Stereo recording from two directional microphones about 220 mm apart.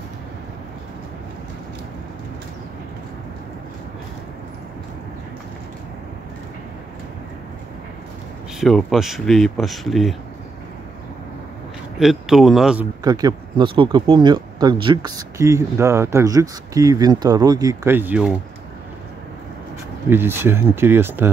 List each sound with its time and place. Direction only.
8.5 s speech: centre (ahead or behind)
12.0 s speech: centre (ahead or behind)
13.0 s speech: 20° right (ahead or behind)
20.1 s speech: 10° right (ahead or behind)